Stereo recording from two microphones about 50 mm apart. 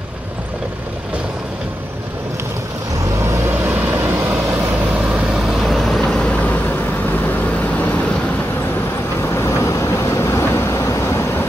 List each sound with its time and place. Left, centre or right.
3.4 s vehicle: right
5.3 s vehicle: centre
6.0 s vehicle: centre
6.4 s vehicle: left
9.2 s vehicle: left